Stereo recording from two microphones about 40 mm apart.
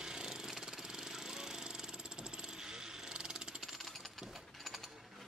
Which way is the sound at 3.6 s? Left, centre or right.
Centre.